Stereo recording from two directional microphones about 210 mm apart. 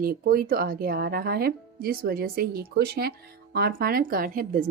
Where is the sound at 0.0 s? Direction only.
45° right (ahead or behind).